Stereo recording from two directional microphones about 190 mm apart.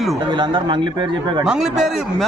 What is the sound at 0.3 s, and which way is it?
Speech, 25° right (ahead or behind).